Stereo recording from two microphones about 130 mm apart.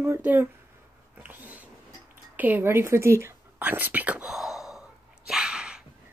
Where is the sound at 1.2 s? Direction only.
10° right (ahead or behind).